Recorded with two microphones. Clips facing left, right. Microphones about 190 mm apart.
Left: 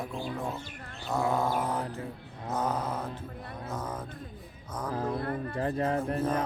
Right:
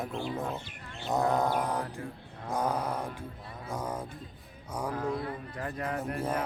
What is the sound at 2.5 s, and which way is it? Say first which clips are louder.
Mantra: even; 10° right (ahead or behind).